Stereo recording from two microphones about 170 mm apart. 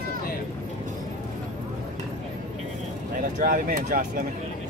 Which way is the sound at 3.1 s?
55° right (ahead or behind).